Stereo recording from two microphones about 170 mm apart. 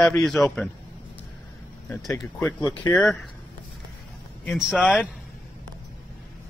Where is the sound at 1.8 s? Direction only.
15° left (ahead or behind).